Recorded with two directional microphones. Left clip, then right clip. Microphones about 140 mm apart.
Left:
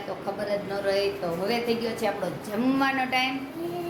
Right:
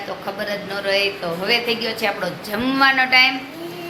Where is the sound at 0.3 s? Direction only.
5° right (ahead or behind).